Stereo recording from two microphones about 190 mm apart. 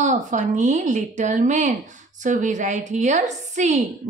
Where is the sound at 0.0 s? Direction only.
40° right (ahead or behind).